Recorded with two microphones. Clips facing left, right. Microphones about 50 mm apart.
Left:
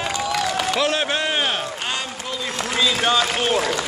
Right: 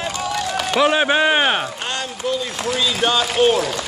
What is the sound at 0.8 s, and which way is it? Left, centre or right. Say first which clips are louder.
Speech: right 10 dB; centre.